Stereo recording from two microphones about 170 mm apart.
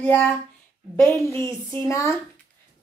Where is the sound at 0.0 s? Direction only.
10° left (ahead or behind).